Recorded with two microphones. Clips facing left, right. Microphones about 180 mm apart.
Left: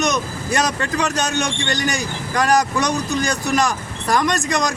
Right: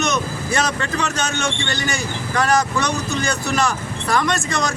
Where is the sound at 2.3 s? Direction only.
15° left (ahead or behind).